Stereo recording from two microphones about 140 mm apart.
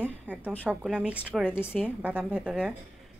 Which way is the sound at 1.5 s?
15° left (ahead or behind).